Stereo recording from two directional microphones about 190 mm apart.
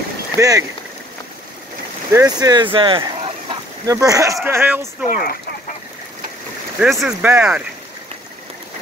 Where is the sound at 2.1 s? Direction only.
15° right (ahead or behind).